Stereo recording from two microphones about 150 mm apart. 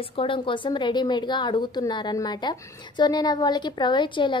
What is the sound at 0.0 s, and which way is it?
A woman's voice, 35° left (ahead or behind).